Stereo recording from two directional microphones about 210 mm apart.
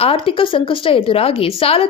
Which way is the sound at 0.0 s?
25° left (ahead or behind).